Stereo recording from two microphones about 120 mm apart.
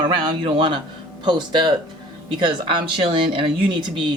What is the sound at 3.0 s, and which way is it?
Speech, 45° right (ahead or behind).